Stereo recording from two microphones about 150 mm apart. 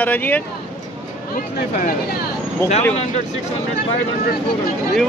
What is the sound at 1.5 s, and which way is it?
Speech, 75° left (ahead or behind).